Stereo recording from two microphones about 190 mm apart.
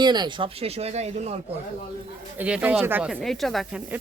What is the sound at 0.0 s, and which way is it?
Speech, 20° right (ahead or behind).